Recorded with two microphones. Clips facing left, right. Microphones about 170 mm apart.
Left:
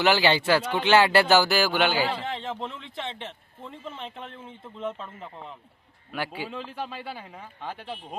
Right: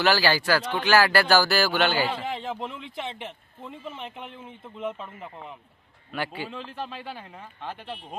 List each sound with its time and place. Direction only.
0.0 s speech: 20° left (ahead or behind)
2.0 s speech: 10° right (ahead or behind)
6.1 s speech: 10° left (ahead or behind)